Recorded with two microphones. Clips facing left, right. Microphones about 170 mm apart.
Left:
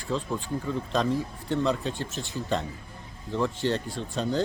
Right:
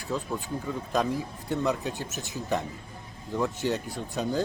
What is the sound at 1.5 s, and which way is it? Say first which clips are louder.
Speech: left 1 dB; 10° right (ahead or behind).